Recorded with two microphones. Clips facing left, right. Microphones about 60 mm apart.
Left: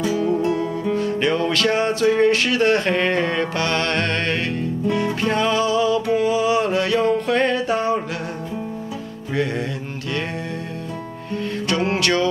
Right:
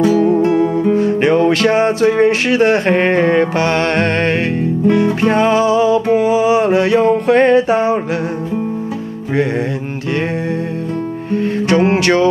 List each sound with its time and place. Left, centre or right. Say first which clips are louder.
0.0 s music: right 8 dB; right
0.8 s music: right 7 dB; right
11.3 s music: right 8 dB; right